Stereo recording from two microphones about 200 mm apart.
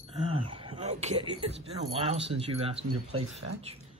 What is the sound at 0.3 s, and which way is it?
Speech, 25° right (ahead or behind).